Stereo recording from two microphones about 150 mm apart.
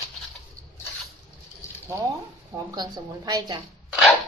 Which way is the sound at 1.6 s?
20° left (ahead or behind).